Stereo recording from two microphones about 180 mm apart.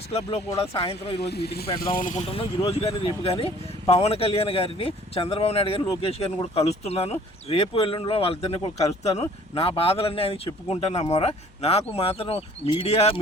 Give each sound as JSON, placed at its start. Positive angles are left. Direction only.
{"t": 0.2, "sound": "speech", "side_deg": 25}
{"t": 1.2, "sound": "speech", "side_deg": 65}
{"t": 1.8, "sound": "speech", "side_deg": 50}
{"t": 2.6, "sound": "speech", "side_deg": 35}